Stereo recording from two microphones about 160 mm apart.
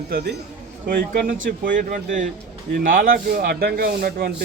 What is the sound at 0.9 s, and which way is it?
Speech, 60° right (ahead or behind).